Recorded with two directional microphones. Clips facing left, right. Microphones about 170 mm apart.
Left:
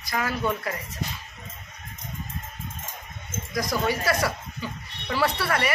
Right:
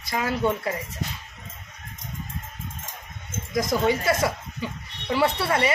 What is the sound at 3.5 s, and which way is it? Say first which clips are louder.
Speech: right 4 dB; 25° right (ahead or behind).